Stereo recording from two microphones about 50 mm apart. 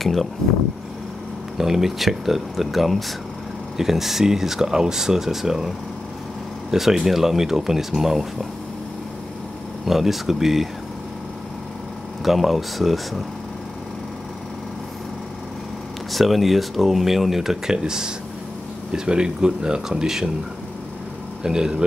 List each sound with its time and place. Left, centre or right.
0.0 s speech: centre
1.6 s speech: centre
6.7 s speech: centre
9.8 s speech: centre
12.3 s speech: centre
16.1 s speech: centre
21.4 s speech: centre